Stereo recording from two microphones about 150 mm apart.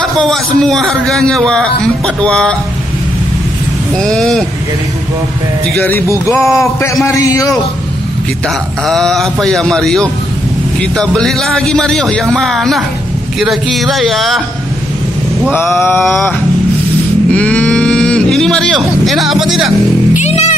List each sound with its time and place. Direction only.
0.3 s a man's voice: 5° left (ahead or behind)
3.9 s a man's voice: 5° left (ahead or behind)
5.9 s speech: 15° left (ahead or behind)
8.8 s a man's voice: centre (ahead or behind)
15.8 s mantra: 15° left (ahead or behind)
16.1 s a man's voice: 5° left (ahead or behind)
17.3 s a sound: 10° left (ahead or behind)
20.2 s music: 50° left (ahead or behind)